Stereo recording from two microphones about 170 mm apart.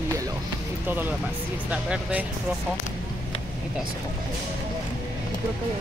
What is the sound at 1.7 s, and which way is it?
Speech, 5° right (ahead or behind).